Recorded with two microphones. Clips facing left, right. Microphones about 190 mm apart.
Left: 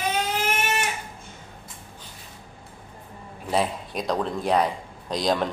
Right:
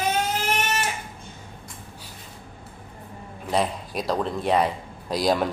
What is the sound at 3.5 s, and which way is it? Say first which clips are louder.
Speech: even; centre (ahead or behind).